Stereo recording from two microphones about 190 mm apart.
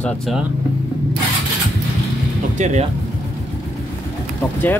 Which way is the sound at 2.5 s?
40° right (ahead or behind).